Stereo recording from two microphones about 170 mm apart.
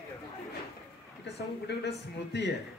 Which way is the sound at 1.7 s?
90° left.